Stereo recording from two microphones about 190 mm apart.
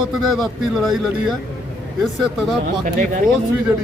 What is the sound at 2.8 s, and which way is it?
Speech, 40° right (ahead or behind).